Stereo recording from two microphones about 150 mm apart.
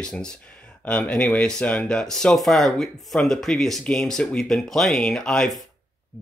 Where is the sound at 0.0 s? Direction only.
5° left (ahead or behind).